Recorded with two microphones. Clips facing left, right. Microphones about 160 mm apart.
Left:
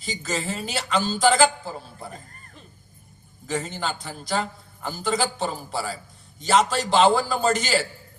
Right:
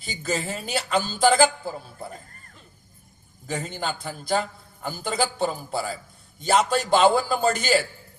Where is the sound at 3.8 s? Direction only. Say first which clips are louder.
Even; 55° right (ahead or behind).